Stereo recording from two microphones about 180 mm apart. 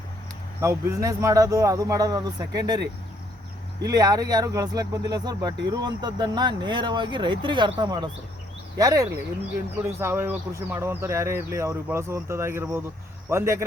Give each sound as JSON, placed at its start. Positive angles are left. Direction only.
{"t": 0.6, "sound": "speech", "side_deg": -15}